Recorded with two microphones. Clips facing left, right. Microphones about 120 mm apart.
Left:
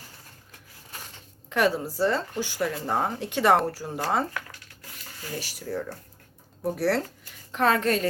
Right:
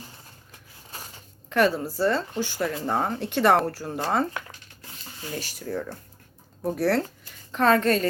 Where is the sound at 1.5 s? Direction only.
15° left (ahead or behind).